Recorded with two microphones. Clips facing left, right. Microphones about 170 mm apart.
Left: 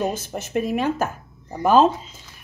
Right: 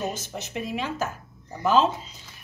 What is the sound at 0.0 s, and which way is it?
A child's voice, 55° left (ahead or behind).